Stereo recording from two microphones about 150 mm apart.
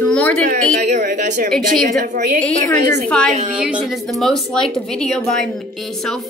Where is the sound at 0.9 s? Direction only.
55° right (ahead or behind).